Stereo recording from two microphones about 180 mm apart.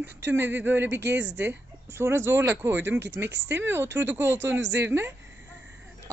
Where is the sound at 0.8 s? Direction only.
75° right (ahead or behind).